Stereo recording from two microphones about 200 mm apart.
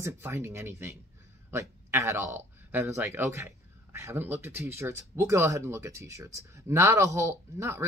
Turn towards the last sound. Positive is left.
turn(degrees=-15)  # may be behind; listen again after turning